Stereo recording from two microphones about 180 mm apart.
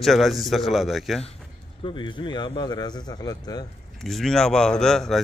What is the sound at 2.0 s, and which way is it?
A man's voice, 25° left (ahead or behind).